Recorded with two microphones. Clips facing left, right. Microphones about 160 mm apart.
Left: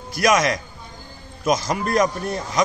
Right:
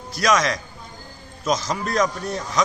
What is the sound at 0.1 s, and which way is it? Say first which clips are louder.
A man's voice: left 2 dB; 10° left (ahead or behind).